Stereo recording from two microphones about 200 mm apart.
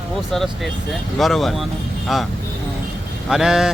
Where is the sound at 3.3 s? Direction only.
Centre (ahead or behind).